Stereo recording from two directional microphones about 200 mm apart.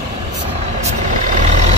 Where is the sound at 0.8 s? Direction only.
35° right (ahead or behind).